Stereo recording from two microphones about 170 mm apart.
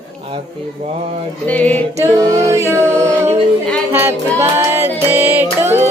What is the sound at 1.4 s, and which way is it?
Music, 10° left (ahead or behind).